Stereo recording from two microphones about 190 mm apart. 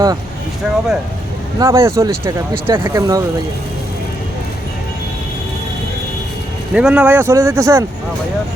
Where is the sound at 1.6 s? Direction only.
15° right (ahead or behind).